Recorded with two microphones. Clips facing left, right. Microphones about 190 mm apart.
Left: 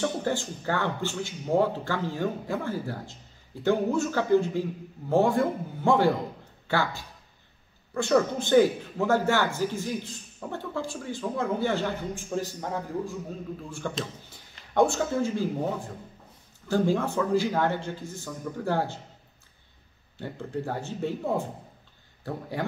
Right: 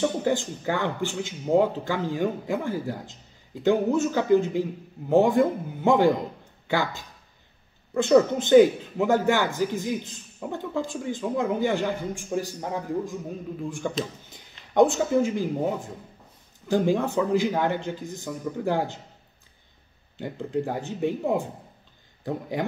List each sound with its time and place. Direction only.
0.0 s a man's voice: 15° right (ahead or behind)
20.2 s a man's voice: 15° right (ahead or behind)